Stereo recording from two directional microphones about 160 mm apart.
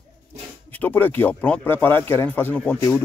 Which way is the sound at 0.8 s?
10° left (ahead or behind).